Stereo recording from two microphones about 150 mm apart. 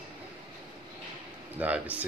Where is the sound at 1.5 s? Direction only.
10° right (ahead or behind).